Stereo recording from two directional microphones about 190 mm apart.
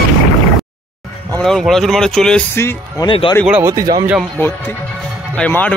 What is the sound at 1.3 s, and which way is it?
Speech, centre (ahead or behind).